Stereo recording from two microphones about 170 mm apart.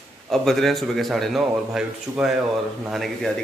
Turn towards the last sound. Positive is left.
turn(degrees=0)  # may be behind; listen again after turning